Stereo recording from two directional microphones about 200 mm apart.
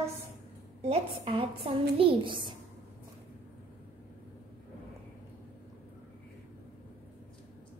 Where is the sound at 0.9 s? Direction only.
30° right (ahead or behind).